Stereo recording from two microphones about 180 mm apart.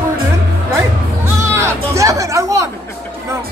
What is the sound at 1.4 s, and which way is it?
Music, 15° right (ahead or behind).